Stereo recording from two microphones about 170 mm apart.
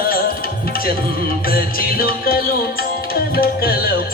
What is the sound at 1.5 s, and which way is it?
Music, 60° left (ahead or behind).